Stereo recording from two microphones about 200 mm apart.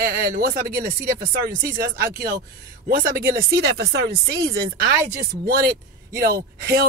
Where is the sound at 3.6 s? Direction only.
55° right (ahead or behind).